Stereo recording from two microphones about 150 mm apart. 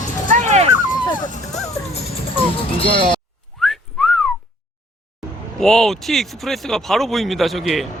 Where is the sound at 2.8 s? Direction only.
35° left (ahead or behind).